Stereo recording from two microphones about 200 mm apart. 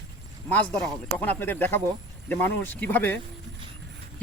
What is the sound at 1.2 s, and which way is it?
Speech, 10° left (ahead or behind).